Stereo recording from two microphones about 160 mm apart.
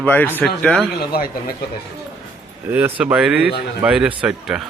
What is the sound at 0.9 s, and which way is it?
Speech, 70° left (ahead or behind).